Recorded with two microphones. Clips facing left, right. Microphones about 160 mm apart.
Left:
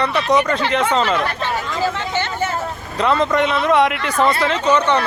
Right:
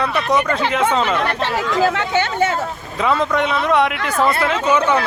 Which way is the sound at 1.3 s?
80° right.